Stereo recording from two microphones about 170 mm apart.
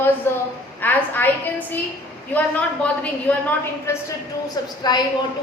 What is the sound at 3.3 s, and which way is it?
Speech, 10° left (ahead or behind).